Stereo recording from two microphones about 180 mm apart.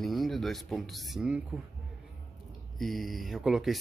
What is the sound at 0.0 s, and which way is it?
Speech, centre (ahead or behind).